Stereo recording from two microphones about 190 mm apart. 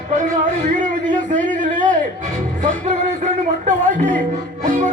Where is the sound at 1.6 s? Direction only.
45° right (ahead or behind).